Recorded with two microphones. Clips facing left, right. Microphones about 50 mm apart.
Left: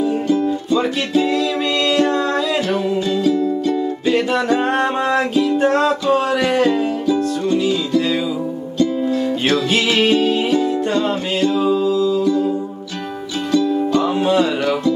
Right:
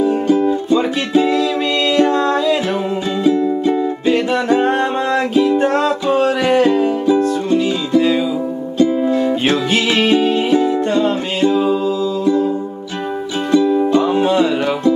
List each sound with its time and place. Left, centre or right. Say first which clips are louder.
0.0 s music: right 3 dB; right
3.3 s music: right 6 dB; right
5.6 s music: even; centre; by 9.6 s right
9.7 s music: right 1 dB; centre
13.5 s music: right 3 dB; right
14.1 s music: right 2 dB; centre